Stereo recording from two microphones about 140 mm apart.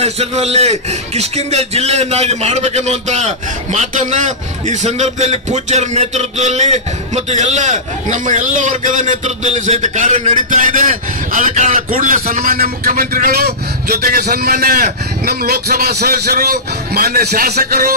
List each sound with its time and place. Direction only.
0.0 s a man's voice: 50° right (ahead or behind); by 17.9 s 90° right